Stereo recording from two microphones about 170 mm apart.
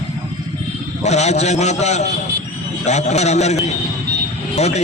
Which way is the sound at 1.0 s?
40° left (ahead or behind).